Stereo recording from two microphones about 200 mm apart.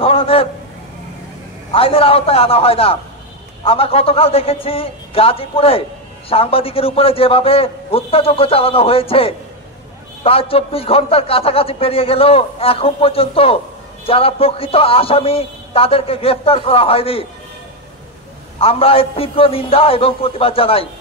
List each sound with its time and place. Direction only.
0.0 s a sound: 30° left (ahead or behind)
1.7 s a man's voice: 30° left (ahead or behind)
18.6 s a man's voice: 30° left (ahead or behind)